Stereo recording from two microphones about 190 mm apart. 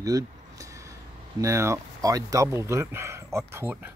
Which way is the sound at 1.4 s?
15° right (ahead or behind).